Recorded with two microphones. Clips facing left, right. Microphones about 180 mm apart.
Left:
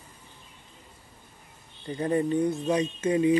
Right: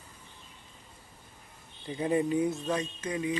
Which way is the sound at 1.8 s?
10° right (ahead or behind).